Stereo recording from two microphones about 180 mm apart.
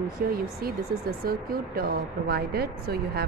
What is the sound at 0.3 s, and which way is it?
Speech, 60° right (ahead or behind).